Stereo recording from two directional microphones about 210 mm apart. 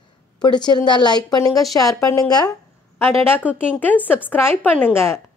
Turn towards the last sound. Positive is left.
turn(degrees=10)  # may be behind; listen again after turning